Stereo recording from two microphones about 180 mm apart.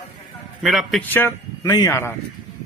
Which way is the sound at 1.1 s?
15° left (ahead or behind).